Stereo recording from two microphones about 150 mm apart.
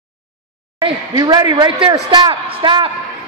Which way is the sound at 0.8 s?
30° right (ahead or behind).